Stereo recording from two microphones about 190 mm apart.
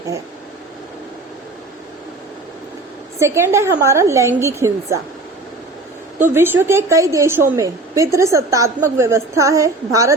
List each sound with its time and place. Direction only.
3.2 s a woman's voice: 15° right (ahead or behind)
6.3 s a woman's voice: 10° right (ahead or behind)